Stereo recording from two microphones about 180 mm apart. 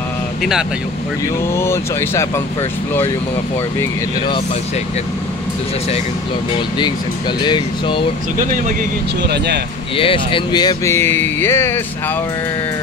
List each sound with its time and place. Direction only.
0.4 s speech: centre (ahead or behind)
1.5 s speech: 15° left (ahead or behind)
7.4 s speech: 25° left (ahead or behind)
9.9 s speech: 30° left (ahead or behind); by 11.8 s 15° left (ahead or behind)